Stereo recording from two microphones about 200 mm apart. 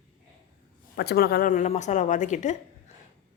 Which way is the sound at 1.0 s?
50° left (ahead or behind).